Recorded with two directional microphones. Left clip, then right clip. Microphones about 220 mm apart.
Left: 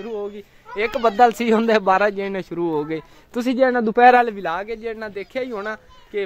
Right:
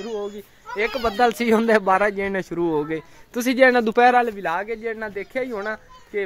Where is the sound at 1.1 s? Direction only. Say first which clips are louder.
Left 4 dB; 20° left (ahead or behind).